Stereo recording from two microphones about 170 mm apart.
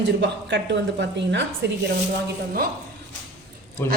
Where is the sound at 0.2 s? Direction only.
90° right.